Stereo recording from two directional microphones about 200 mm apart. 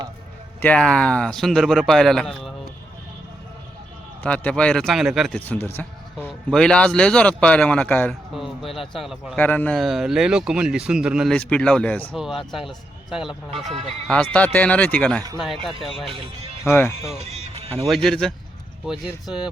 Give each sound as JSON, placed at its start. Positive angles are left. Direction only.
{"t": 0.6, "sound": "speech", "side_deg": 5}
{"t": 4.2, "sound": "speech", "side_deg": 5}
{"t": 16.0, "sound": "speech", "side_deg": -30}
{"t": 16.6, "sound": "speech", "side_deg": 10}
{"t": 17.0, "sound": "speech", "side_deg": -30}
{"t": 17.8, "sound": "speech", "side_deg": 0}